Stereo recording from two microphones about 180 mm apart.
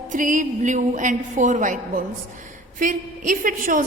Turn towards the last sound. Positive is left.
turn(degrees=-50)  # may be behind; listen again after turning